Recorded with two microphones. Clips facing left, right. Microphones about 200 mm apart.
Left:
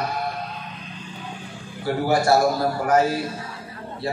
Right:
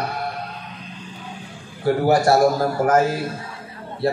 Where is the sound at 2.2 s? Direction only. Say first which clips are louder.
Right 2 dB; 50° right (ahead or behind).